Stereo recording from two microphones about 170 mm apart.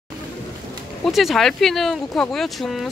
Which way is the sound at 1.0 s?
Centre (ahead or behind).